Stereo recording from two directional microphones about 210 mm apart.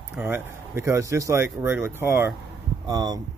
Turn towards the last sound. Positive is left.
turn(degrees=-20)  # may be behind; listen again after turning